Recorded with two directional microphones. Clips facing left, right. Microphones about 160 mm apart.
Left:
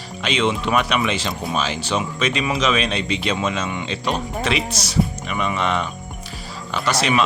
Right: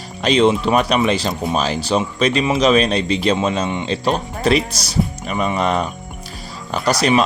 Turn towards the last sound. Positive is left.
turn(degrees=-40)  # may be behind; listen again after turning